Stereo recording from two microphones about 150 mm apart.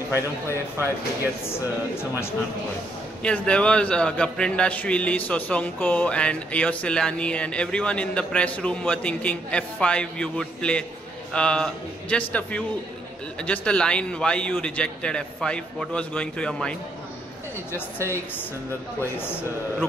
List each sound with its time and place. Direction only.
1.4 s a man's voice: 15° left (ahead or behind)
18.9 s a man's voice: 15° left (ahead or behind)